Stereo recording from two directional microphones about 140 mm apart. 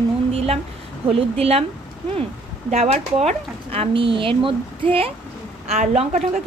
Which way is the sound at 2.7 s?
50° right (ahead or behind).